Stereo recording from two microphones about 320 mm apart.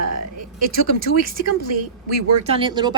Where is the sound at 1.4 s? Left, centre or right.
Right.